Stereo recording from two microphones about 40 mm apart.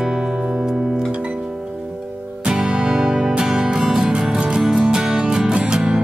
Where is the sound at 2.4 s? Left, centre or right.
Right.